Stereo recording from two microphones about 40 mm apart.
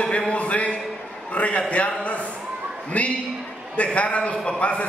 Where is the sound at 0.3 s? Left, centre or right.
Left.